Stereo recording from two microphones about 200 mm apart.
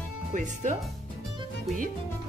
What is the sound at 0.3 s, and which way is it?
Speech, 40° right (ahead or behind).